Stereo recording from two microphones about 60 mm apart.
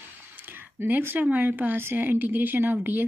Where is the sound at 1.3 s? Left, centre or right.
Right.